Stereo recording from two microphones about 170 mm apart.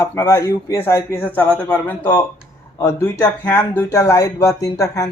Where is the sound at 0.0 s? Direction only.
15° left (ahead or behind).